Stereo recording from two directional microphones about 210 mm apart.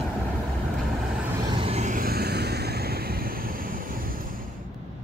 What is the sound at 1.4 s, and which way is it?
Vehicle, 25° right (ahead or behind).